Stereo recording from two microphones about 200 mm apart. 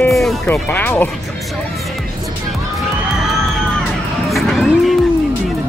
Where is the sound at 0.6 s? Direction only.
10° left (ahead or behind).